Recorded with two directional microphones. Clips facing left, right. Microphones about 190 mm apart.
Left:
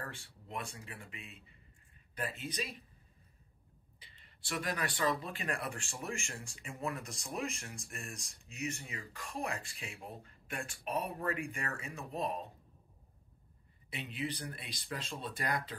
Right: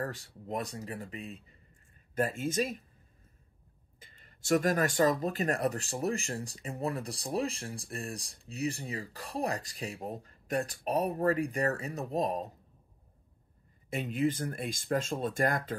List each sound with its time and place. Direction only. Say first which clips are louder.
0.0 s speech: right 9 dB; 40° right (ahead or behind)
4.0 s speech: right 6 dB; 45° right (ahead or behind)
13.8 s speech: right 10 dB; 45° right (ahead or behind)